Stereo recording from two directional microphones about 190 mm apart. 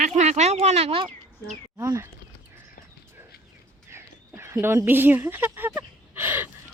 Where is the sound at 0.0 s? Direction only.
35° right (ahead or behind).